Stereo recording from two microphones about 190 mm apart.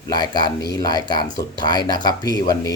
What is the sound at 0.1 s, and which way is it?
Speech, 20° left (ahead or behind).